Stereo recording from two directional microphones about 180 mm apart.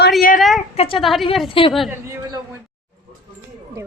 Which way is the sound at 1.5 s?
30° left (ahead or behind).